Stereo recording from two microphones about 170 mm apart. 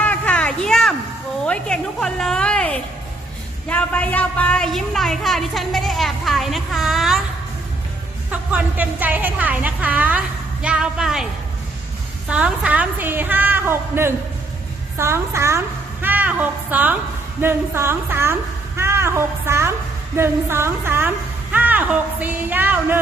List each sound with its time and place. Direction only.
0.0 s a sound: 10° left (ahead or behind)
1.5 s a woman's voice: 5° left (ahead or behind)
8.3 s a woman's voice: 10° right (ahead or behind)
12.3 s a woman's voice: 5° right (ahead or behind)